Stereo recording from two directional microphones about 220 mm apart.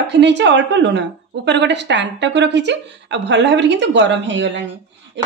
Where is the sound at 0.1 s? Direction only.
55° right (ahead or behind).